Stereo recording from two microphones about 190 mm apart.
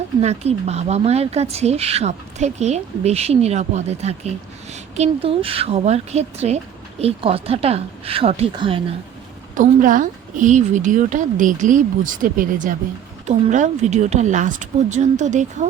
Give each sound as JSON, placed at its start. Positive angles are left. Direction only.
{"t": 0.2, "sound": "speech", "side_deg": -35}
{"t": 9.6, "sound": "a woman's voice", "side_deg": -45}